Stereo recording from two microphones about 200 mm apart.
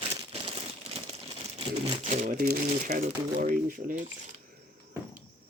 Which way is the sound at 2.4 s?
45° right (ahead or behind).